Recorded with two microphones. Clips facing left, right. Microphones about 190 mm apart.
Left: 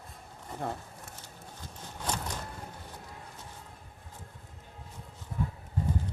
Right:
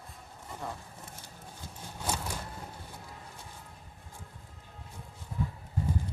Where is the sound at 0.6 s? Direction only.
60° left (ahead or behind).